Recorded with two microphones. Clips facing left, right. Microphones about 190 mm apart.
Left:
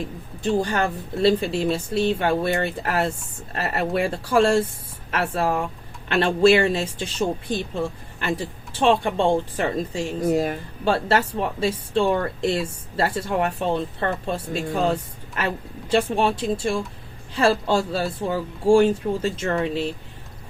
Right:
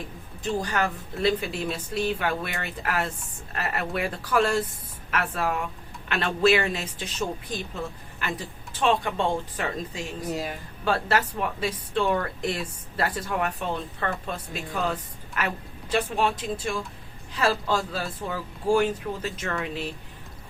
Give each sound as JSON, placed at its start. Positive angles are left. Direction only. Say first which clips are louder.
{"t": 0.6, "sound": "speech", "louder": "left 4 dB", "side_deg": 30}
{"t": 10.2, "sound": "speech", "louder": "left 10 dB", "side_deg": 55}
{"t": 10.8, "sound": "speech", "louder": "left 4 dB", "side_deg": 30}